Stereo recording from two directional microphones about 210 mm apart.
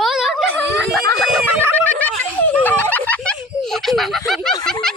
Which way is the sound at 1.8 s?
10° left (ahead or behind).